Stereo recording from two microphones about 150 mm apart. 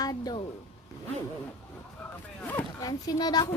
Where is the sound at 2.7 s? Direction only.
25° left (ahead or behind).